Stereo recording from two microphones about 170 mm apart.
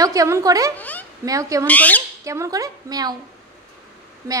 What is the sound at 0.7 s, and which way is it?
Speech, 10° left (ahead or behind).